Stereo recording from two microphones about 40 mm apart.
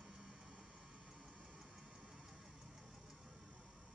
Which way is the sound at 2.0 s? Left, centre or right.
Right.